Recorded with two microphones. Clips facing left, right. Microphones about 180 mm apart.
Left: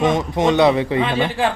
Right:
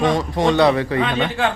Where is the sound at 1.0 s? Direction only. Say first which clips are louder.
Left 1 dB; 5° left (ahead or behind).